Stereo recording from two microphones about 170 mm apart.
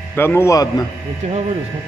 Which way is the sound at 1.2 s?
40° right (ahead or behind).